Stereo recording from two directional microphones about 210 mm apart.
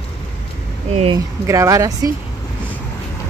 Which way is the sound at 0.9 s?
25° right (ahead or behind).